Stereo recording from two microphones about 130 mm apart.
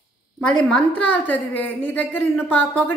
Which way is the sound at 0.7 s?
10° left (ahead or behind).